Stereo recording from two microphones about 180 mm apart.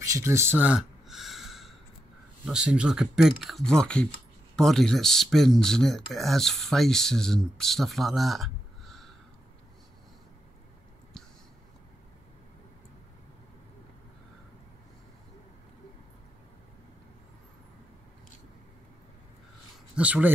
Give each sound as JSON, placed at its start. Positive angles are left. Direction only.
{"t": 0.0, "sound": "a sound", "side_deg": -15}
{"t": 2.4, "sound": "speech", "side_deg": -5}
{"t": 20.0, "sound": "speech", "side_deg": -10}